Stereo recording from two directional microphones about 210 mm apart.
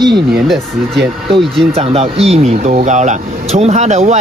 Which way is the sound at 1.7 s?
30° right (ahead or behind).